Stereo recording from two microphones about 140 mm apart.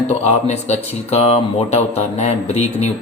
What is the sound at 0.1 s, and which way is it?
Speech, 50° left (ahead or behind).